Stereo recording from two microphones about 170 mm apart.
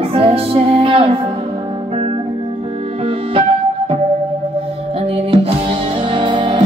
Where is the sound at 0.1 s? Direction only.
35° right (ahead or behind).